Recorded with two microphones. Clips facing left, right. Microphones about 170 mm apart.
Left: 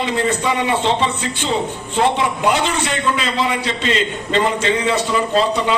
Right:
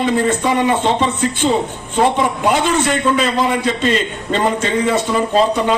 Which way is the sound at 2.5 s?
50° right (ahead or behind).